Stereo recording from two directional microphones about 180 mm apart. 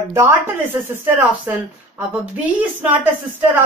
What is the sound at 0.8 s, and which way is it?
Speech, 10° right (ahead or behind).